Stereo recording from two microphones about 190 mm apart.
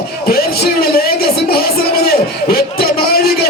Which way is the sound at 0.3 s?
55° left (ahead or behind).